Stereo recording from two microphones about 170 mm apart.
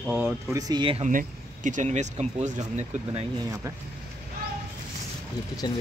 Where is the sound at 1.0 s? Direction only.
50° right (ahead or behind).